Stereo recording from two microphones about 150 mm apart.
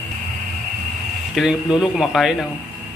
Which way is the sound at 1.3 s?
5° right (ahead or behind).